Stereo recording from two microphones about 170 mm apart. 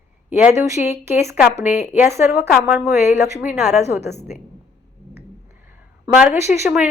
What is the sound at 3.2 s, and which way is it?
Speech, 15° right (ahead or behind).